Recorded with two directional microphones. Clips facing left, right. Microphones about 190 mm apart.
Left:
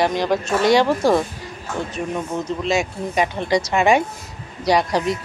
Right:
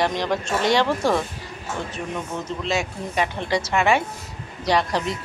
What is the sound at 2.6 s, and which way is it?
Speech, 15° left (ahead or behind).